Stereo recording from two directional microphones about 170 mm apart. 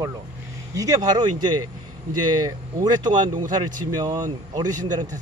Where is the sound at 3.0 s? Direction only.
25° right (ahead or behind).